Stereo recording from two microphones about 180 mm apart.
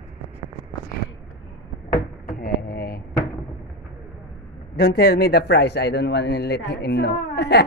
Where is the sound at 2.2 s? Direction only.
55° left (ahead or behind).